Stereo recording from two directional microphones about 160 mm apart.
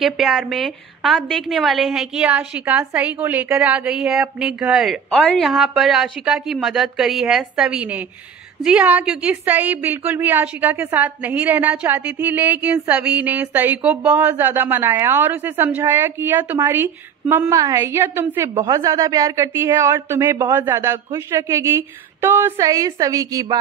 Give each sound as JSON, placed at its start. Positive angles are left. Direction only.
{"t": 0.0, "sound": "a woman's voice", "side_deg": 0}